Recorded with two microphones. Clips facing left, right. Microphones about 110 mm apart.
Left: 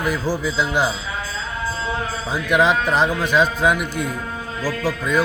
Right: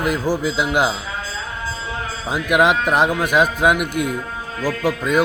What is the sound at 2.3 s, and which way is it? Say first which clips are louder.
Speech: right 2 dB; 10° right (ahead or behind).